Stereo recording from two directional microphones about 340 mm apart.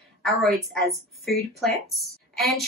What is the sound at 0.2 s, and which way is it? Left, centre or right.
Speech, centre.